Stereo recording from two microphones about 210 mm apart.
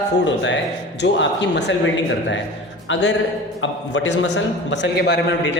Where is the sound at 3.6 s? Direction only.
60° left (ahead or behind).